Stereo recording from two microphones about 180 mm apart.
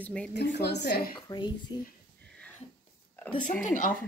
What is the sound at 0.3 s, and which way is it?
Speech, 65° left (ahead or behind).